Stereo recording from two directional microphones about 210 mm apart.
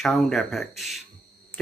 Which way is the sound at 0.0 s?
Centre (ahead or behind).